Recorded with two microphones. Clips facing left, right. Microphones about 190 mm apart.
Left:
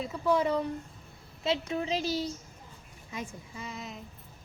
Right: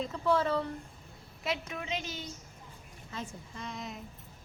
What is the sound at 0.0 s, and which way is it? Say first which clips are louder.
Speech: left 2 dB; 10° left (ahead or behind).